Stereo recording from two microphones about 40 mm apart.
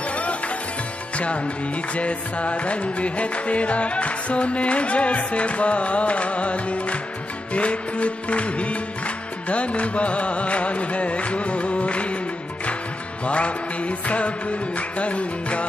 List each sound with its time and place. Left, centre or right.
0.1 s music: left
13.2 s music: left